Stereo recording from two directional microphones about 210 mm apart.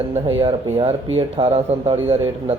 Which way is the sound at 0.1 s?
25° right (ahead or behind).